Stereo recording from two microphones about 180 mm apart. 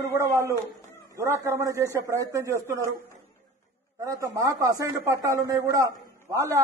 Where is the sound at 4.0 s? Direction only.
20° right (ahead or behind).